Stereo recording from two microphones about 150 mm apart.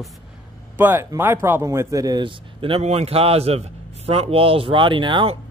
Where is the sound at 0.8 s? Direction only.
15° right (ahead or behind).